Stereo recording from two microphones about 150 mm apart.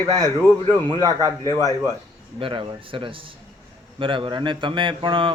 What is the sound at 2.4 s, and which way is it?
Speech, 35° right (ahead or behind).